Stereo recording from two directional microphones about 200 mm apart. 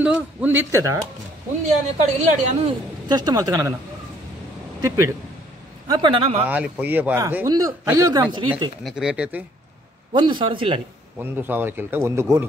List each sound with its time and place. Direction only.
0.0 s a man's voice: 5° right (ahead or behind)
2.0 s a woman's voice: 35° right (ahead or behind)
3.1 s a man's voice: 20° right (ahead or behind)
4.8 s a man's voice: 15° right (ahead or behind)
5.9 s speech: 25° right (ahead or behind)
6.4 s a man's voice: 5° right (ahead or behind)
8.8 s speech: 5° right (ahead or behind)
10.1 s speech: 25° right (ahead or behind)
11.4 s a man's voice: 10° right (ahead or behind)